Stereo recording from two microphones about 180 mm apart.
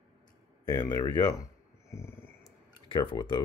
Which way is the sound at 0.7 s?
20° left (ahead or behind).